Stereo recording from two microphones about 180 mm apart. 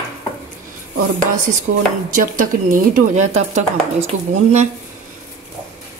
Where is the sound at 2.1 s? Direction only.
50° right (ahead or behind).